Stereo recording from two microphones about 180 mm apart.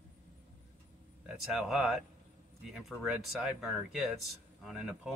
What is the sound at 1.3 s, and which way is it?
Speech, centre (ahead or behind).